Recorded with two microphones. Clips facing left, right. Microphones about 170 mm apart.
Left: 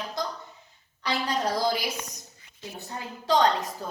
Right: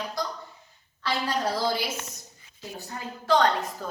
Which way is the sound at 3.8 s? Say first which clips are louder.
Even; 20° left (ahead or behind).